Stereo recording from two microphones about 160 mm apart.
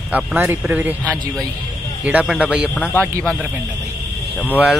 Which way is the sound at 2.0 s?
10° right (ahead or behind).